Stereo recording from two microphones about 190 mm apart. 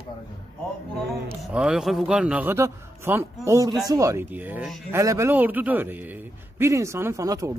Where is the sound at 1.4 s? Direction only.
5° right (ahead or behind).